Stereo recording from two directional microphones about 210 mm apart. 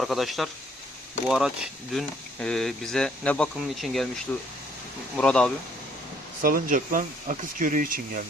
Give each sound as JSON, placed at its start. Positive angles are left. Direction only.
{"t": 0.0, "sound": "speech", "side_deg": 0}
{"t": 5.1, "sound": "speech", "side_deg": 5}
{"t": 6.4, "sound": "speech", "side_deg": -40}